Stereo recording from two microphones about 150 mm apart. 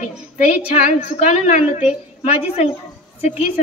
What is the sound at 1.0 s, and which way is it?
Speech, 55° left (ahead or behind).